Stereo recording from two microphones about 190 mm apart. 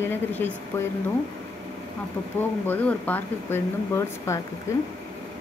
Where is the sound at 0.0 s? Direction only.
10° left (ahead or behind).